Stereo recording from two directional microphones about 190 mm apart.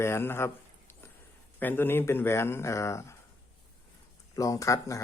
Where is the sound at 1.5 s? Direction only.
10° left (ahead or behind).